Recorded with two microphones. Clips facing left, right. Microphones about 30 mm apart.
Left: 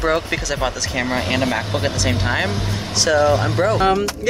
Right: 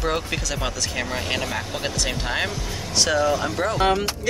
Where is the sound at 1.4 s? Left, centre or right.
Left.